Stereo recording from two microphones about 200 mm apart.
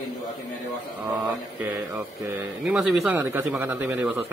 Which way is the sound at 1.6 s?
10° right (ahead or behind).